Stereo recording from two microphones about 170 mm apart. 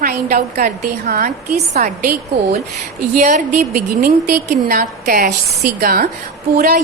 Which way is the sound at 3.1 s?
50° right (ahead or behind).